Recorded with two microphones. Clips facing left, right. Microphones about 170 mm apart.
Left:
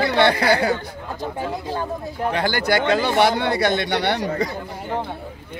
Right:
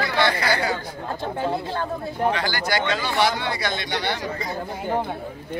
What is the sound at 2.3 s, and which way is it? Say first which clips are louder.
A man's voice: left 4 dB; 55° left (ahead or behind).